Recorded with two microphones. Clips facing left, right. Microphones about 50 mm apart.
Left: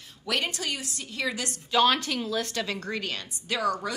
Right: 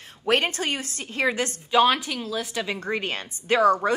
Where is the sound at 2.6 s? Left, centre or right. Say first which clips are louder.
Right 4 dB; right.